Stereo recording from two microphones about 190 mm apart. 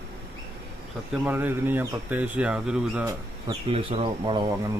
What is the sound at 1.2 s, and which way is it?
Speech, 10° right (ahead or behind).